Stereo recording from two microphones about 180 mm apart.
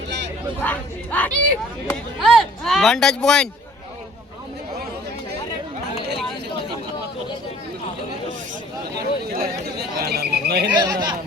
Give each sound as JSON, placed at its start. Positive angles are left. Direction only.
{"t": 0.6, "sound": "speech", "side_deg": 10}
{"t": 9.0, "sound": "chatter", "side_deg": -60}
{"t": 10.7, "sound": "speech", "side_deg": -25}